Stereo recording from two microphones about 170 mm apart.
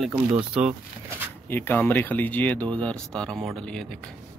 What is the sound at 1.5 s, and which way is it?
Speech, 10° left (ahead or behind).